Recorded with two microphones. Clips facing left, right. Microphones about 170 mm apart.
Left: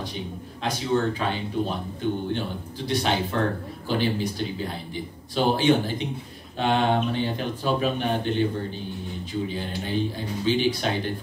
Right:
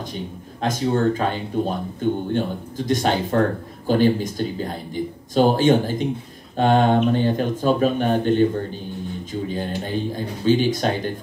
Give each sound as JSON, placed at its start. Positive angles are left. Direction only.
{"t": 0.1, "sound": "a man's voice", "side_deg": -45}